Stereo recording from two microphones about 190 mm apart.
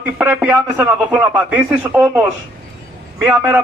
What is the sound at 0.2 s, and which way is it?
A man's voice, 10° right (ahead or behind).